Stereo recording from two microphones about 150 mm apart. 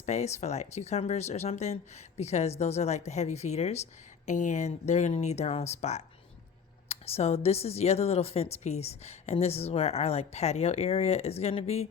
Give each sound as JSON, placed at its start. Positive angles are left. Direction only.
{"t": 0.0, "sound": "speech", "side_deg": 50}